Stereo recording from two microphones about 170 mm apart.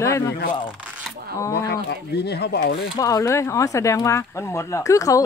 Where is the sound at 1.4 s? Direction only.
15° left (ahead or behind).